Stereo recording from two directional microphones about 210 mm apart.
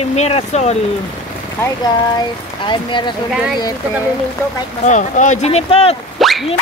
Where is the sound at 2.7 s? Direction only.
20° left (ahead or behind).